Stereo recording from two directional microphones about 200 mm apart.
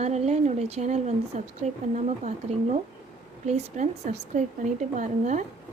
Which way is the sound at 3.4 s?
35° right (ahead or behind).